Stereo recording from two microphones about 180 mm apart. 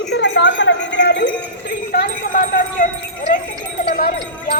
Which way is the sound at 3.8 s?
60° left (ahead or behind).